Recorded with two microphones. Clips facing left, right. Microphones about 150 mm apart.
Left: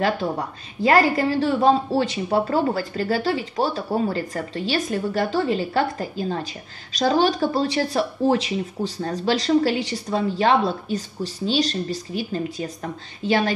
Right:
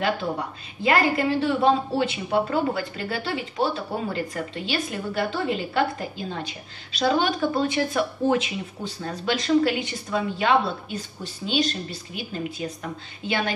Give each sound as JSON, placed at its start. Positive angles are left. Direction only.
{"t": 0.8, "sound": "a woman's voice", "side_deg": 40}